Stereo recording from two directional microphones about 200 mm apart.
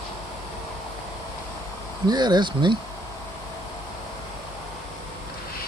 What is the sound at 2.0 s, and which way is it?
Speech, 20° right (ahead or behind).